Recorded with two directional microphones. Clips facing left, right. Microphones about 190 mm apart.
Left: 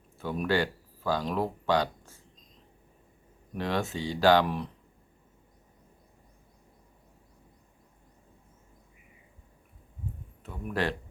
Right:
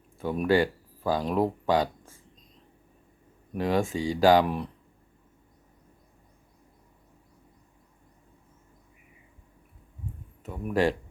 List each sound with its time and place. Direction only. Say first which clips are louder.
0.3 s speech: right 5 dB; centre (ahead or behind)
3.5 s speech: right 5 dB; 5° right (ahead or behind)
10.4 s speech: right 6 dB; 10° right (ahead or behind)